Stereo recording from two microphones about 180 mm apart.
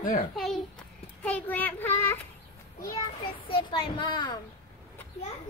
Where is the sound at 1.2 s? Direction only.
10° left (ahead or behind).